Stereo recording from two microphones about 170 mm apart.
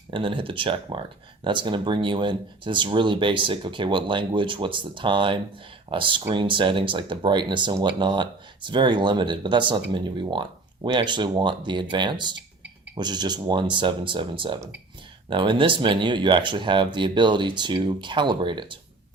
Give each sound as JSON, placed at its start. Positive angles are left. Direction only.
{"t": 0.1, "sound": "speech", "side_deg": -30}